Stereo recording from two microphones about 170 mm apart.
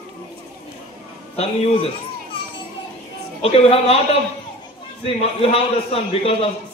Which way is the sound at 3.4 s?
35° left (ahead or behind).